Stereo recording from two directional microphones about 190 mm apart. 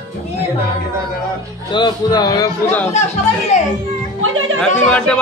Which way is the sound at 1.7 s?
20° left (ahead or behind).